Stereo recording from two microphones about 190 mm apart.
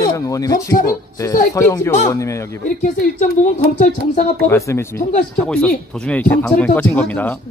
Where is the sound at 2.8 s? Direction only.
40° left (ahead or behind).